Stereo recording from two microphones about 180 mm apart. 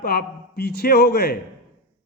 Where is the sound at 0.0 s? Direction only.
60° left (ahead or behind).